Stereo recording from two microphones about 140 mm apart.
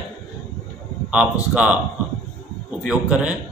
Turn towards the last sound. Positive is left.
turn(degrees=-10)  # may be behind; listen again after turning